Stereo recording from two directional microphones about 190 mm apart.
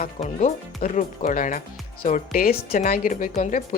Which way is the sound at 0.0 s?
35° left (ahead or behind).